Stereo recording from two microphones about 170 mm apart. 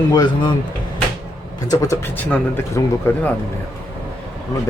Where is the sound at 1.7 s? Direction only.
20° left (ahead or behind).